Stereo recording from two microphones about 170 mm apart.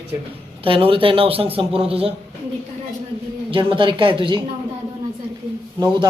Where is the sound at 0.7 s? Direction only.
30° right (ahead or behind).